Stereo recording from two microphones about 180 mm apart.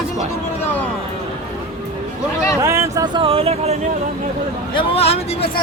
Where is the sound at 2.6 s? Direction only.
15° right (ahead or behind); by 3.8 s 35° right (ahead or behind).